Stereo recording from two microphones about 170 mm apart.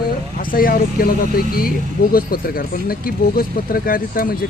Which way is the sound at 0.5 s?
60° left (ahead or behind).